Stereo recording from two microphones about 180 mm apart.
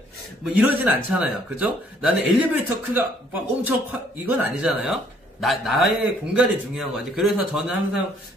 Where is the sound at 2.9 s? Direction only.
10° right (ahead or behind).